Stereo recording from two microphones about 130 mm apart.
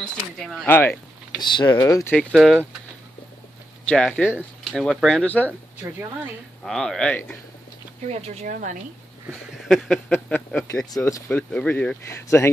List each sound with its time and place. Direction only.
0.0 s speech: 5° left (ahead or behind)
0.7 s speech: 15° left (ahead or behind)
1.4 s speech: 35° left (ahead or behind)
1.8 s speech: 25° left (ahead or behind)
2.1 s speech: centre (ahead or behind)
3.9 s speech: 10° left (ahead or behind)
4.4 s speech: centre (ahead or behind)
6.6 s speech: 5° left (ahead or behind)
8.1 s speech: 55° right (ahead or behind)
8.5 s speech: 90° right
9.3 s speech: 5° left (ahead or behind); by 11.3 s 25° left (ahead or behind)
11.3 s speech: 10° left (ahead or behind)